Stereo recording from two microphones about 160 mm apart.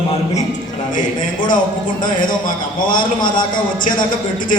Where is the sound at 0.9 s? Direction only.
55° left (ahead or behind).